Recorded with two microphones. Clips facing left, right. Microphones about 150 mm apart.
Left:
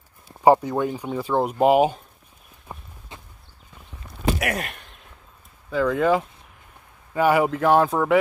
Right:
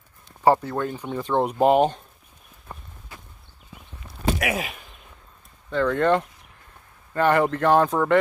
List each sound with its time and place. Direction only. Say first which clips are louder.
0.4 s speech: left 3 dB; 15° left (ahead or behind)
2.7 s walk: left 1 dB; 10° left (ahead or behind)
3.1 s walk: left 2 dB; 25° left (ahead or behind)
4.4 s a sound: even; centre (ahead or behind)
5.7 s speech: even; 5° left (ahead or behind)